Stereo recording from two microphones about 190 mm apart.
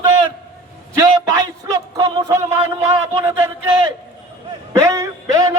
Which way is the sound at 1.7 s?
20° right (ahead or behind).